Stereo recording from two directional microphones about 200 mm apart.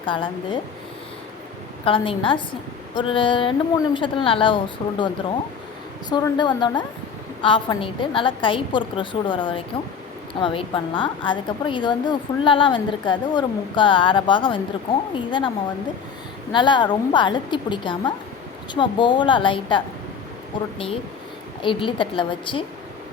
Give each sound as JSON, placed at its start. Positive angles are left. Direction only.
{"t": 0.0, "sound": "a woman's voice", "side_deg": 25}
{"t": 1.8, "sound": "a woman's voice", "side_deg": 25}
{"t": 6.1, "sound": "a woman's voice", "side_deg": 20}